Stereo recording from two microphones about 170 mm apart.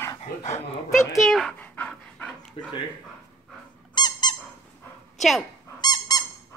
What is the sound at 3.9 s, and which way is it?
Squeak, 25° left (ahead or behind).